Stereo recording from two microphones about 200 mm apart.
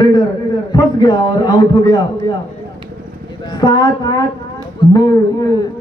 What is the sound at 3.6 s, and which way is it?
Speech, 20° left (ahead or behind).